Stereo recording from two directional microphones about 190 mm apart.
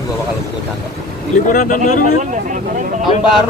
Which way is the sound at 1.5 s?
45° left (ahead or behind).